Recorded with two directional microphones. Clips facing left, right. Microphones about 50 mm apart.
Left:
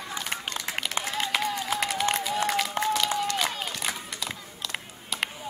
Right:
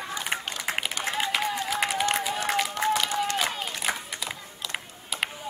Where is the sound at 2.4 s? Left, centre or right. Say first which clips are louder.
Right 2 dB; centre.